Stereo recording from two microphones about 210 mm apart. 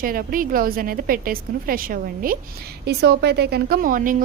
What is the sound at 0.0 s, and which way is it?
Speech, 40° right (ahead or behind).